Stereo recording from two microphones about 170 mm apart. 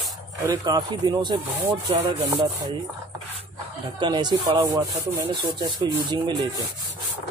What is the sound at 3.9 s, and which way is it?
Speech, 25° right (ahead or behind).